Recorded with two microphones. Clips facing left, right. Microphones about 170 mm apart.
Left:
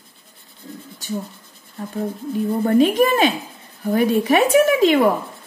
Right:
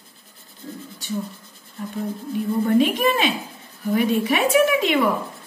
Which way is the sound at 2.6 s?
40° left (ahead or behind).